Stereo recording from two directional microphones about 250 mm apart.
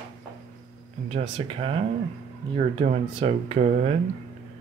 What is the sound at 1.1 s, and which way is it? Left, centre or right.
Speech, right.